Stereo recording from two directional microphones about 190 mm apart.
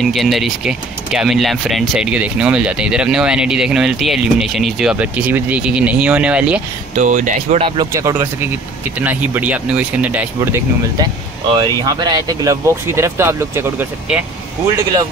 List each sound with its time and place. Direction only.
0.0 s speech: centre (ahead or behind)
7.0 s speech: 40° right (ahead or behind)
7.6 s speech: 25° right (ahead or behind)
7.9 s speech: 15° right (ahead or behind)